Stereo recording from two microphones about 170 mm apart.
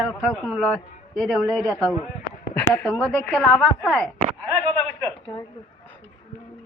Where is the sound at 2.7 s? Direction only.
5° left (ahead or behind).